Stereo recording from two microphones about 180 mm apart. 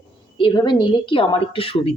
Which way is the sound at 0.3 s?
25° left (ahead or behind).